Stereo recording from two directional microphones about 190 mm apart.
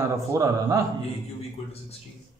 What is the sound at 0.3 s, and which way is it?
Speech, 20° right (ahead or behind).